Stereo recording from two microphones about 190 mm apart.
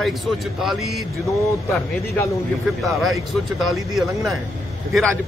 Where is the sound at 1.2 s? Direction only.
15° left (ahead or behind).